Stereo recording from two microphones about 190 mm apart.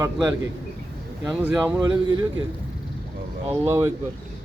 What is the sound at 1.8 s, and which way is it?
Speech, 20° right (ahead or behind).